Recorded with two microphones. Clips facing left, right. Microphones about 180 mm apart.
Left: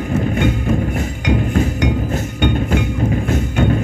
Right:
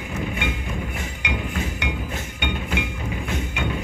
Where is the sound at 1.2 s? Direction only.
40° left (ahead or behind).